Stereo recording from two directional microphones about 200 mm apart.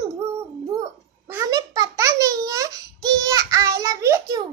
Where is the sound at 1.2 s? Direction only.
15° right (ahead or behind).